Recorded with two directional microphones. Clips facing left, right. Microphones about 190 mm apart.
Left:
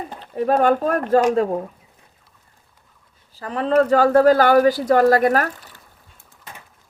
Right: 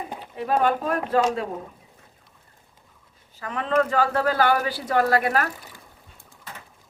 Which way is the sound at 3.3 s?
35° left (ahead or behind).